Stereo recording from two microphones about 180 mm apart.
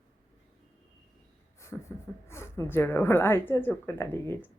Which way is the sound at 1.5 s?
15° left (ahead or behind).